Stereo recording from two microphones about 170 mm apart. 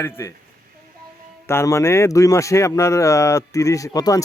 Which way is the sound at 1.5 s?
15° left (ahead or behind).